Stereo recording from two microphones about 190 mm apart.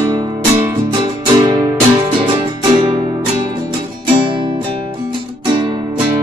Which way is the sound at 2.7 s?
25° right (ahead or behind).